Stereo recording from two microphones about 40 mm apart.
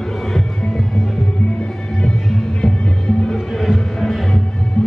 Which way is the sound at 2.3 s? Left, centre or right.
Centre.